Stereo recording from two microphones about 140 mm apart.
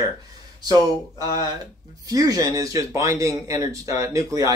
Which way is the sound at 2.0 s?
25° right (ahead or behind).